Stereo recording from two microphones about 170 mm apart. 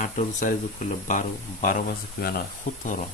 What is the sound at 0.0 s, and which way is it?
Speech, 45° left (ahead or behind).